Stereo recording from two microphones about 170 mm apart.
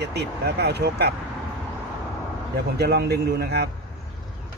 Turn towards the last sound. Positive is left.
turn(degrees=-75)  # may be behind; listen again after turning